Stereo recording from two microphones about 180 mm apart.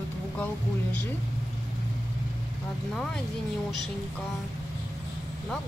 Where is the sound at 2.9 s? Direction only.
Centre (ahead or behind).